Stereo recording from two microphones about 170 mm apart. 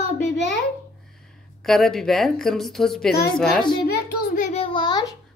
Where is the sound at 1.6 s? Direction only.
Centre (ahead or behind).